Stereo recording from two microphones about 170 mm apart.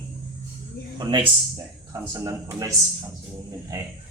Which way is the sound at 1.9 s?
20° right (ahead or behind).